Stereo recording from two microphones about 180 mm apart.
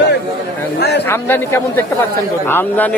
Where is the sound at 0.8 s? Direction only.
70° left (ahead or behind).